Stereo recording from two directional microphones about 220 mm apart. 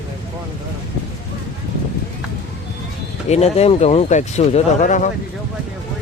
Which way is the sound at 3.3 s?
30° left (ahead or behind).